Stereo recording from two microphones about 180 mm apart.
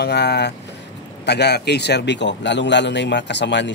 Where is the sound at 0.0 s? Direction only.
65° left (ahead or behind).